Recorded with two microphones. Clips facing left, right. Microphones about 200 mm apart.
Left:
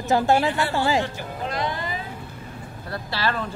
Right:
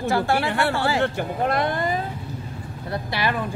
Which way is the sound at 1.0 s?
60° right (ahead or behind).